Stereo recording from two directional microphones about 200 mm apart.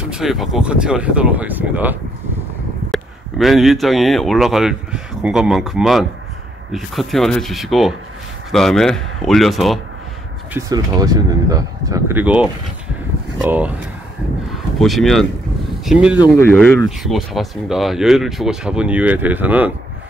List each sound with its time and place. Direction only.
0.1 s speech: centre (ahead or behind)
10.5 s speech: 20° right (ahead or behind); by 16.2 s 5° right (ahead or behind)
16.3 s speech: 10° left (ahead or behind); by 19.7 s 10° right (ahead or behind)